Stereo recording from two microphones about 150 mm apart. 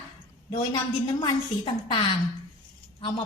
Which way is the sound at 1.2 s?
35° left (ahead or behind).